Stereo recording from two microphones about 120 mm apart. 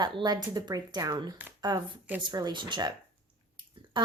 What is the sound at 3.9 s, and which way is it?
Speech, 40° right (ahead or behind).